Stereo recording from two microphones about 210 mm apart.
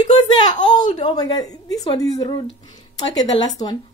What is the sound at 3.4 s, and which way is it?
Speech, 20° left (ahead or behind).